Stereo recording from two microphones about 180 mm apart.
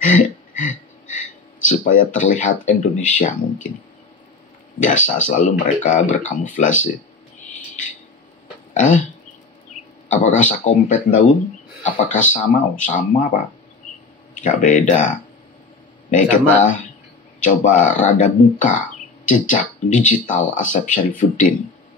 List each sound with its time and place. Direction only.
0.0 s a sound: 45° left (ahead or behind)
1.7 s speech: 45° left (ahead or behind)
4.7 s speech: 45° left (ahead or behind)
8.7 s speech: 45° left (ahead or behind)
10.0 s speech: 45° left (ahead or behind)
14.3 s speech: 45° left (ahead or behind)
16.1 s speech: 45° left (ahead or behind)